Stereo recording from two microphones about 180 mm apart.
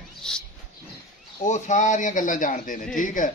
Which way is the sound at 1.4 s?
40° left (ahead or behind).